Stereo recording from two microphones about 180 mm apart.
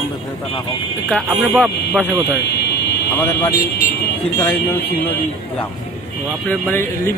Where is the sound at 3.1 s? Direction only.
10° left (ahead or behind).